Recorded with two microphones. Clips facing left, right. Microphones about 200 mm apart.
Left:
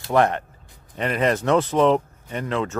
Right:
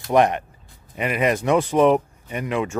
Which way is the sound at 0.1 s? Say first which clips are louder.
Right 2 dB; 15° right (ahead or behind).